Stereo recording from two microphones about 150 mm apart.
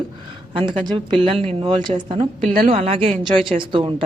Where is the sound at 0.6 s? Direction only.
35° right (ahead or behind).